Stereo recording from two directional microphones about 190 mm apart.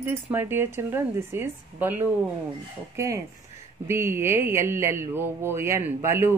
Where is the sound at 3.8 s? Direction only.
15° right (ahead or behind).